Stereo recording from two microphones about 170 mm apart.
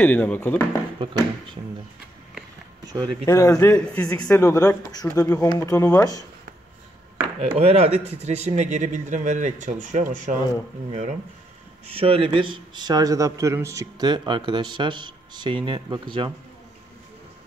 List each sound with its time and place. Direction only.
0.0 s speech: 10° left (ahead or behind)
2.9 s speech: 20° right (ahead or behind)
3.3 s speech: 20° left (ahead or behind)
4.2 s speech: 20° left (ahead or behind)
7.3 s a man's voice: 35° right (ahead or behind)
11.9 s speech: 35° right (ahead or behind)